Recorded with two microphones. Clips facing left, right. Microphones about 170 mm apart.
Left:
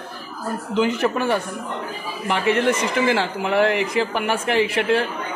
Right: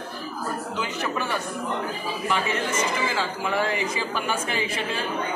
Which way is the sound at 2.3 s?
70° left (ahead or behind).